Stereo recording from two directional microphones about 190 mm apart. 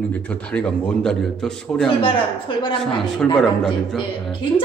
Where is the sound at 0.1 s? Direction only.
5° left (ahead or behind).